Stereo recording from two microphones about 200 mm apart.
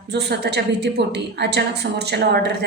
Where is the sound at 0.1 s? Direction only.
55° right (ahead or behind).